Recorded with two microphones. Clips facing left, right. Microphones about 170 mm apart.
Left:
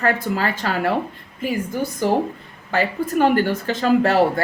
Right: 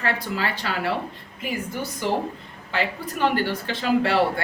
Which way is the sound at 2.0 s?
45° left (ahead or behind).